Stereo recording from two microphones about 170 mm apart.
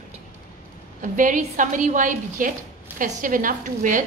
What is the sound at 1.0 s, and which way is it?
A woman's voice, 50° right (ahead or behind).